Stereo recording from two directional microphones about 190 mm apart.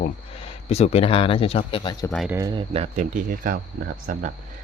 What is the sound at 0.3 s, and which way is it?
Speech, 30° left (ahead or behind).